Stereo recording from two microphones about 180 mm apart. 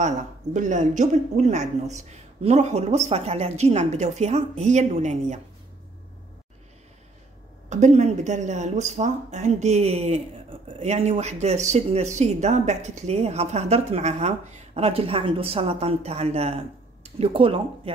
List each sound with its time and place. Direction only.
0.0 s speech: 45° right (ahead or behind)
7.7 s speech: 40° right (ahead or behind)